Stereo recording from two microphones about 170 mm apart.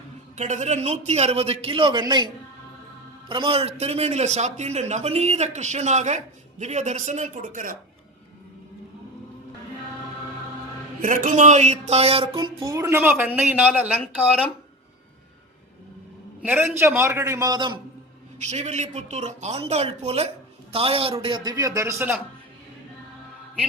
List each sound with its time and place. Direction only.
0.3 s a man's voice: 45° right (ahead or behind)
11.0 s speech: 50° right (ahead or behind)
12.4 s a man's voice: 20° right (ahead or behind)
16.4 s a man's voice: 10° right (ahead or behind)
18.3 s a man's voice: 40° right (ahead or behind); by 22.1 s 15° right (ahead or behind)